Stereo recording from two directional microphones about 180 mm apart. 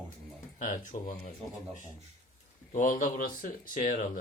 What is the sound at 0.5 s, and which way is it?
Speech, 45° left (ahead or behind).